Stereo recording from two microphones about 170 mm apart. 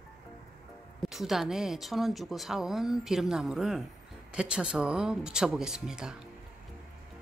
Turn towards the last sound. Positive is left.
turn(degrees=-5)  # may be behind; listen again after turning